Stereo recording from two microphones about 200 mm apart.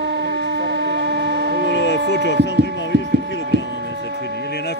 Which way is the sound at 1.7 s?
65° left (ahead or behind).